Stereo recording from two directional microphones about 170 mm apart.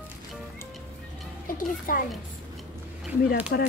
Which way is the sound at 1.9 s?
55° left (ahead or behind).